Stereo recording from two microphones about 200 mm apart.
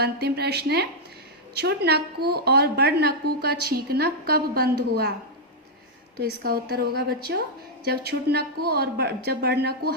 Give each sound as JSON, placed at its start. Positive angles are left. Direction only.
{"t": 0.0, "sound": "a woman's voice", "side_deg": -55}
{"t": 6.1, "sound": "a woman's voice", "side_deg": -50}